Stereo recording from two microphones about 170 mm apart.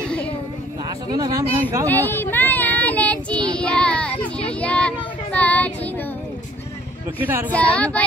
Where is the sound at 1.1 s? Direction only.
20° right (ahead or behind).